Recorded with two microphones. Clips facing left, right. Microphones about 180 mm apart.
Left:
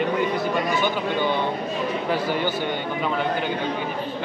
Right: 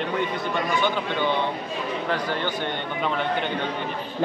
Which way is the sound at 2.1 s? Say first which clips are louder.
Left 3 dB; 10° left (ahead or behind).